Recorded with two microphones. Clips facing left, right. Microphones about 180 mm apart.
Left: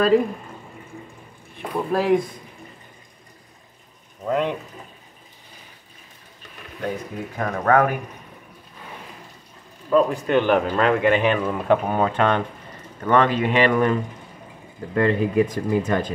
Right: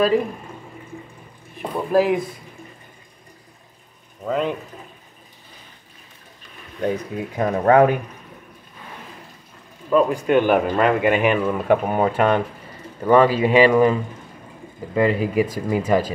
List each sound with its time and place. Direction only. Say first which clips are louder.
1.6 s speech: right 4 dB; 5° right (ahead or behind)
4.3 s speech: even; centre (ahead or behind)
7.3 s speech: right 4 dB; 25° right (ahead or behind)
9.9 s speech: right 1 dB; 10° right (ahead or behind)
15.0 s speech: even; 5° right (ahead or behind)